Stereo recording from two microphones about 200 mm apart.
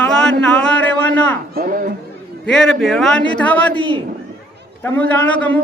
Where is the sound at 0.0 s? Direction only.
5° left (ahead or behind).